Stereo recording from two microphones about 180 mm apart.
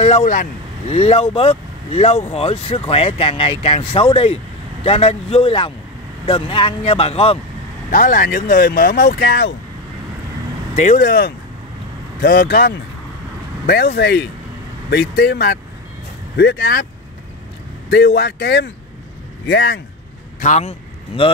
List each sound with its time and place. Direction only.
0.0 s speech: 40° left (ahead or behind)
7.9 s speech: 50° left (ahead or behind)
10.8 s speech: 50° left (ahead or behind); by 16.8 s 65° left (ahead or behind)
17.8 s speech: 65° left (ahead or behind)
20.3 s speech: 40° left (ahead or behind)